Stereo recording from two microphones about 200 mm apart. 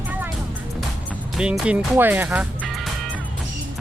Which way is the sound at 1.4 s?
5° right (ahead or behind).